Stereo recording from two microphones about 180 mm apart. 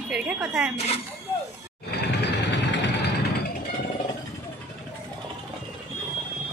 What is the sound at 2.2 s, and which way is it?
Vehicle, 75° left (ahead or behind).